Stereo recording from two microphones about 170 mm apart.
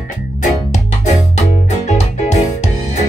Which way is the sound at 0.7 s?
40° left (ahead or behind).